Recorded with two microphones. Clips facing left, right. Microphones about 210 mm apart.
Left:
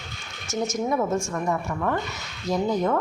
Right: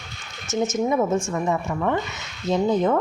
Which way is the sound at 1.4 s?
20° right (ahead or behind).